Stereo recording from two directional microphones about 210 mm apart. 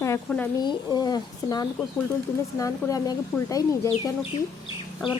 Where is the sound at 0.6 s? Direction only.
20° left (ahead or behind).